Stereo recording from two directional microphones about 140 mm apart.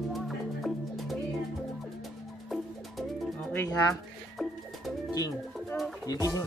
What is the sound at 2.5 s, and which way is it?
Music, centre (ahead or behind).